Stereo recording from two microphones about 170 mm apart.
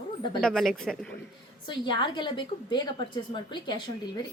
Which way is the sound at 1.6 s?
25° left (ahead or behind).